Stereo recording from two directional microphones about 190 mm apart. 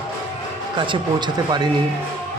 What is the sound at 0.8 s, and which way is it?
Speech, 25° right (ahead or behind).